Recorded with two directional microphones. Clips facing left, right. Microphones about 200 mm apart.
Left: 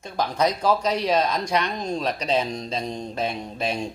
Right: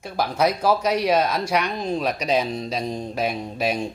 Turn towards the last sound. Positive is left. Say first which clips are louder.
# right 3 dB
turn(degrees=-10)  # may be behind; listen again after turning